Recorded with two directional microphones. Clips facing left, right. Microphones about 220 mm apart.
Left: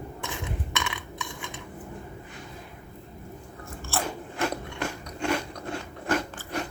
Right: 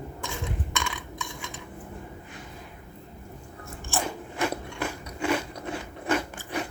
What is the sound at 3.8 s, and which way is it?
Biting, 15° right (ahead or behind).